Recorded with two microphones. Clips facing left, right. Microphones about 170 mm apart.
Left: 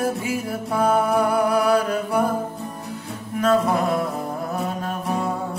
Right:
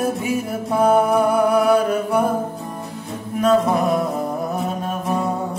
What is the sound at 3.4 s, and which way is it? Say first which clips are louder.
Music: right 3 dB; 20° right (ahead or behind).